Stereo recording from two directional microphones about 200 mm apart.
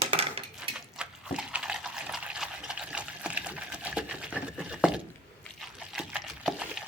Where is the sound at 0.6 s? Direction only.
5° right (ahead or behind).